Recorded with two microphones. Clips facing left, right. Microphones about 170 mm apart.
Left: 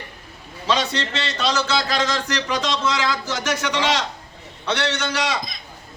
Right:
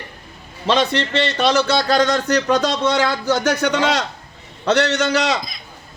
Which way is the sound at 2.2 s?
65° right (ahead or behind).